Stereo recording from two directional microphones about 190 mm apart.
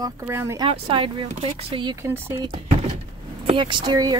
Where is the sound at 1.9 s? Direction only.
15° right (ahead or behind).